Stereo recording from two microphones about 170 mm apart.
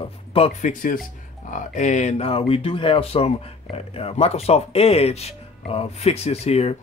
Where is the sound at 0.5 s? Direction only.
50° left (ahead or behind).